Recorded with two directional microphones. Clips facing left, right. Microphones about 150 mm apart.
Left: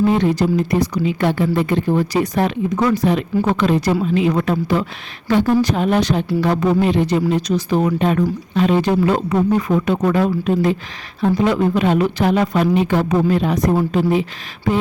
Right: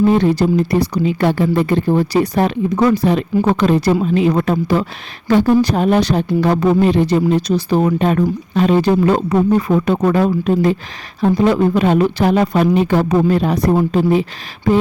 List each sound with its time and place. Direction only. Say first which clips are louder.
0.2 s speech: right 3 dB; 35° right (ahead or behind)